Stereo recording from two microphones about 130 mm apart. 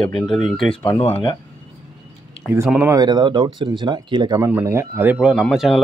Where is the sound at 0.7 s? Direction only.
40° left (ahead or behind).